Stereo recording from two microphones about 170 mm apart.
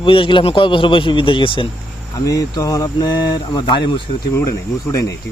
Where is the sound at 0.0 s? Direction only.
30° left (ahead or behind).